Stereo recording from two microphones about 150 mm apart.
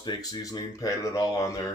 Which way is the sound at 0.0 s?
25° left (ahead or behind).